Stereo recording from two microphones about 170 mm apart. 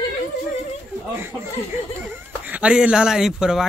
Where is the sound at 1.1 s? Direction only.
15° right (ahead or behind).